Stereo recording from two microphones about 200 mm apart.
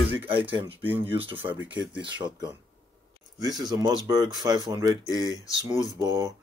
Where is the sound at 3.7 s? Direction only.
20° right (ahead or behind).